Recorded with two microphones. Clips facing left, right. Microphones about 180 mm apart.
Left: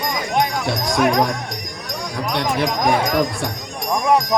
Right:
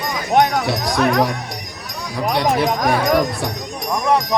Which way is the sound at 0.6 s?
Centre (ahead or behind).